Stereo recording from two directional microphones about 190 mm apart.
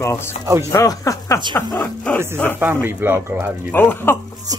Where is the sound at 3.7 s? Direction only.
10° left (ahead or behind).